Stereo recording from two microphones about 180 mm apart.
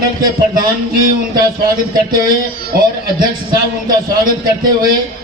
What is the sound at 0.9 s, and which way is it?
A man's voice, 55° right (ahead or behind).